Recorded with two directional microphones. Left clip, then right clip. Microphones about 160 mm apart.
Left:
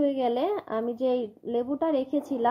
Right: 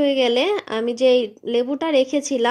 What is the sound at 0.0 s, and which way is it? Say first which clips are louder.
Speech: right 8 dB; 10° right (ahead or behind).